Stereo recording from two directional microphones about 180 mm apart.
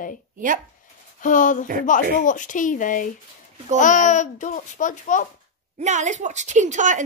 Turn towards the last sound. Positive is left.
turn(degrees=-40)  # may be behind; listen again after turning